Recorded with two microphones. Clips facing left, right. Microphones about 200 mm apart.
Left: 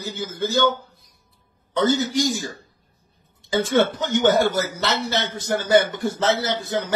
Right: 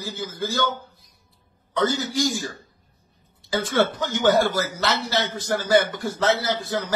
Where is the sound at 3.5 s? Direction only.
20° left (ahead or behind).